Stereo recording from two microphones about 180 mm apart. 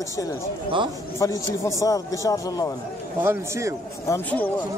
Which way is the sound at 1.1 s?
15° left (ahead or behind).